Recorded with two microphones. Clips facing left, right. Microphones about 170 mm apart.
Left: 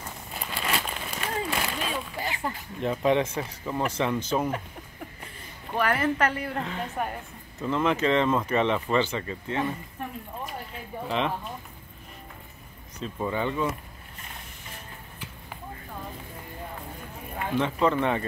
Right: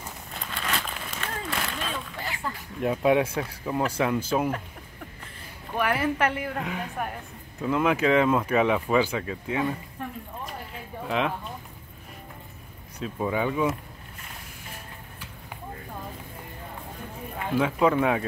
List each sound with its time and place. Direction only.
0.3 s a sound: 5° left (ahead or behind)
2.4 s speech: 20° left (ahead or behind)
2.8 s speech: 5° right (ahead or behind)
5.8 s speech: 10° right (ahead or behind)
11.1 s speech: centre (ahead or behind)
13.0 s speech: 10° right (ahead or behind)
17.6 s speech: 5° right (ahead or behind)